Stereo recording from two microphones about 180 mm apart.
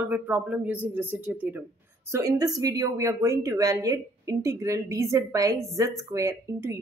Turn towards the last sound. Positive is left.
turn(degrees=-15)  # may be behind; listen again after turning